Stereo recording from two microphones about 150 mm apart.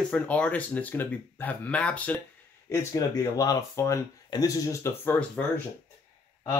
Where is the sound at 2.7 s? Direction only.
20° left (ahead or behind).